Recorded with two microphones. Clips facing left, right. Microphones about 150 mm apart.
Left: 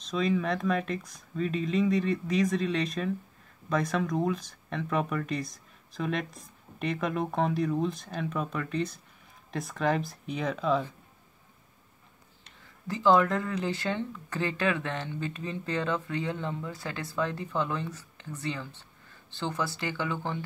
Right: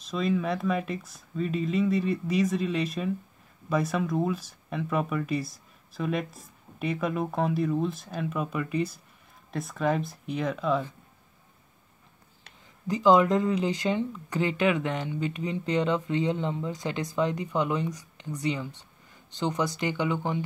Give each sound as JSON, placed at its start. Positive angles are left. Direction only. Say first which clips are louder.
{"t": 0.0, "sound": "speech", "louder": "right 1 dB", "side_deg": -5}
{"t": 12.8, "sound": "speech", "louder": "right 3 dB", "side_deg": -15}